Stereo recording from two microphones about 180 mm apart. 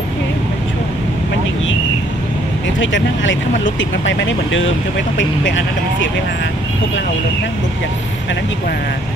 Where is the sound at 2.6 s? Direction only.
85° left.